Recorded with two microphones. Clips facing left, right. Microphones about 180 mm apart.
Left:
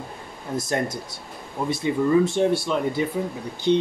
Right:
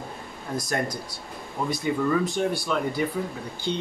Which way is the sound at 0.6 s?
25° left (ahead or behind).